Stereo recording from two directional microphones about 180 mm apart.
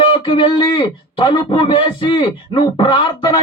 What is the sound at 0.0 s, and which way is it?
Speech, 30° left (ahead or behind).